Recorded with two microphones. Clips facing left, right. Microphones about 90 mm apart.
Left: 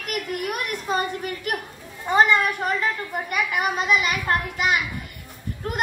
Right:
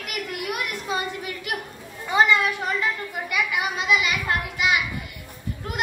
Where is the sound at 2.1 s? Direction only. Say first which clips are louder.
Left 1 dB; 45° left (ahead or behind).